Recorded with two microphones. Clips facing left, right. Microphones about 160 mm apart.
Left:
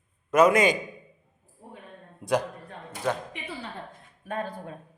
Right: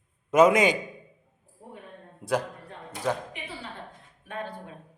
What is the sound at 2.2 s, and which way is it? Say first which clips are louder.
Speech: left 2 dB; centre (ahead or behind).